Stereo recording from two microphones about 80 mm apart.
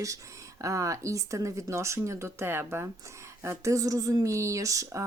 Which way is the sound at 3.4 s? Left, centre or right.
Right.